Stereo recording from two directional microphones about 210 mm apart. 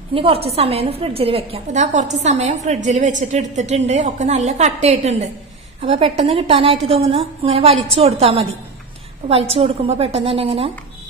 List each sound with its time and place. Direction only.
0.1 s a woman's voice: 25° right (ahead or behind)